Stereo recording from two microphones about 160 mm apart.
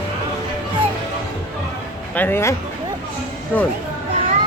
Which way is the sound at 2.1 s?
10° left (ahead or behind).